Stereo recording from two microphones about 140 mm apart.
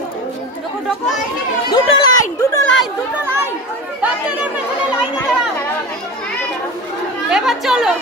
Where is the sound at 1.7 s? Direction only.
30° left (ahead or behind).